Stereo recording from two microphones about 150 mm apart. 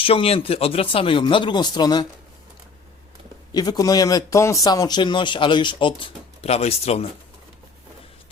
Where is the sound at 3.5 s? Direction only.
25° left (ahead or behind); by 7.1 s 45° left (ahead or behind).